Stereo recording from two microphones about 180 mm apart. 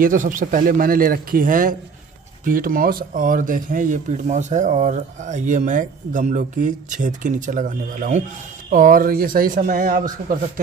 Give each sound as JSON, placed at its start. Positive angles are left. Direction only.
{"t": 0.0, "sound": "speech", "side_deg": -50}